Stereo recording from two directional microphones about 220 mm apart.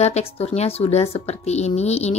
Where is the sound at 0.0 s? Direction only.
30° left (ahead or behind).